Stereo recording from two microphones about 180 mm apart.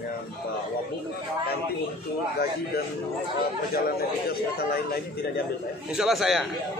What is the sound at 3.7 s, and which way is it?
A man's voice, 60° left (ahead or behind).